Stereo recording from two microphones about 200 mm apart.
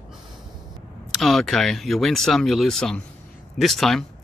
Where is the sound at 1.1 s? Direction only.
Centre (ahead or behind).